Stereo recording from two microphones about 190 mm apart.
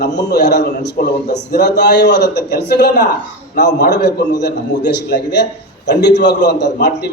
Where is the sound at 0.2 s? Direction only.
60° left (ahead or behind).